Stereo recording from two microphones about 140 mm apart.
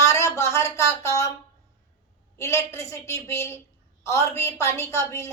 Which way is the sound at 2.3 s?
20° left (ahead or behind).